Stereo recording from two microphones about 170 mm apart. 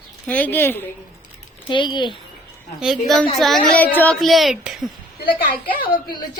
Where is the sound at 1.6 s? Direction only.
30° left (ahead or behind).